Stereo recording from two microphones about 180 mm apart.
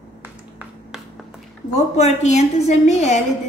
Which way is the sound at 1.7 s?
40° left (ahead or behind).